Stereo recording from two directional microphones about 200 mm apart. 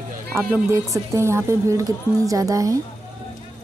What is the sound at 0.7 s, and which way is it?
Speech, 15° right (ahead or behind).